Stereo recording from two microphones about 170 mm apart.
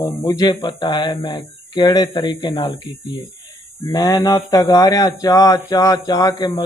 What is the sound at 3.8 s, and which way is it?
Speech, 20° left (ahead or behind).